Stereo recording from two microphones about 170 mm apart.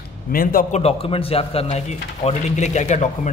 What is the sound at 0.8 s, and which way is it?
A man's voice, 35° left (ahead or behind).